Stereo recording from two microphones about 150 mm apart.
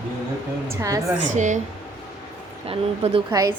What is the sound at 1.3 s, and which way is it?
Speech, 55° right (ahead or behind).